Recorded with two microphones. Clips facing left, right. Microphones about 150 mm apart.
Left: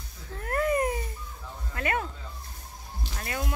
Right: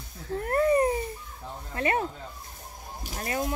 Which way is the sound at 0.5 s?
30° right (ahead or behind).